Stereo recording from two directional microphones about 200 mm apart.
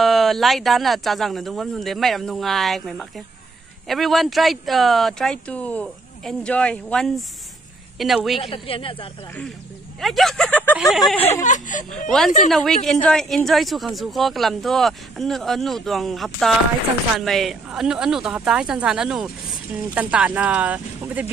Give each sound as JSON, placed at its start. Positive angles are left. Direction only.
{"t": 0.0, "sound": "speech", "side_deg": 0}
{"t": 8.4, "sound": "speech", "side_deg": 25}
{"t": 9.9, "sound": "speech", "side_deg": 0}
{"t": 11.4, "sound": "speech", "side_deg": 40}
{"t": 12.4, "sound": "speech", "side_deg": 0}